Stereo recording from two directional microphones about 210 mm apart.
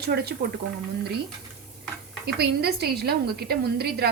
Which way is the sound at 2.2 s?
50° right (ahead or behind).